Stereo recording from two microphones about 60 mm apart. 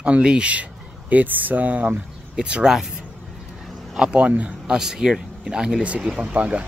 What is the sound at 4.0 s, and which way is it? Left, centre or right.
Speech, centre.